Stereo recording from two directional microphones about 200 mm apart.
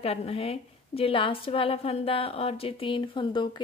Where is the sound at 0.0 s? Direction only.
30° left (ahead or behind).